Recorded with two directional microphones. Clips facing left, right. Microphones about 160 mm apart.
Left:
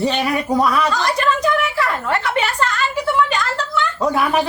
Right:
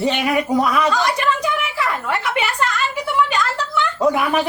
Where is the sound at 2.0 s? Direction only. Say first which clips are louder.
Left 2 dB; 10° right (ahead or behind).